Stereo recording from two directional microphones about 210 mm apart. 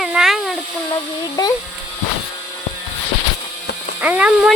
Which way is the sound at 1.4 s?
15° left (ahead or behind).